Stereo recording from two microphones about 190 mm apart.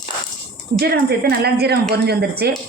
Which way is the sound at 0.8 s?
55° right (ahead or behind).